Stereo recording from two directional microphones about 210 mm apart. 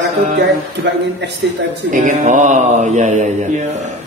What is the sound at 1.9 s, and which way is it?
Mantra, 35° right (ahead or behind).